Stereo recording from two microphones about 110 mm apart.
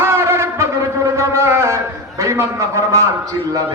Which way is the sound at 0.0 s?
20° right (ahead or behind).